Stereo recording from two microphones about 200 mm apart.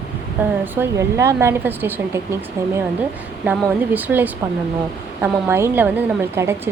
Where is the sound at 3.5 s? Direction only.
10° right (ahead or behind).